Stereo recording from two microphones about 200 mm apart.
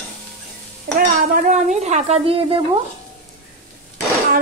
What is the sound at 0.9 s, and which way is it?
Speech, 40° right (ahead or behind).